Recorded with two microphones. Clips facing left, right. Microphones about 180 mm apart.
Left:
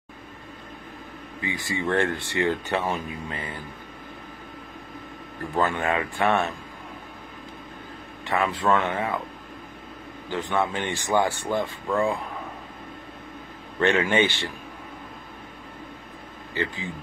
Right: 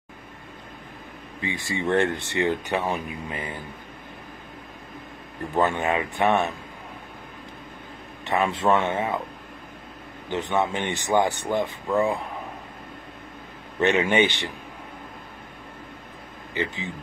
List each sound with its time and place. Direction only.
1.4 s speech: 25° right (ahead or behind)
5.5 s speech: 20° right (ahead or behind)
8.3 s speech: 25° right (ahead or behind)
10.3 s speech: 20° right (ahead or behind)
13.7 s speech: 20° right (ahead or behind)
16.5 s speech: 20° right (ahead or behind)